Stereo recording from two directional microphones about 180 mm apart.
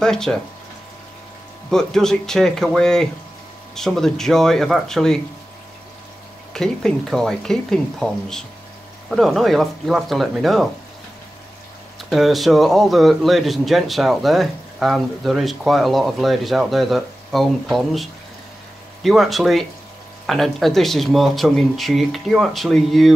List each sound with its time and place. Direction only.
0.0 s speech: 5° left (ahead or behind)
1.7 s speech: 5° left (ahead or behind)
6.5 s speech: 5° left (ahead or behind)
12.1 s speech: centre (ahead or behind)
19.0 s speech: centre (ahead or behind)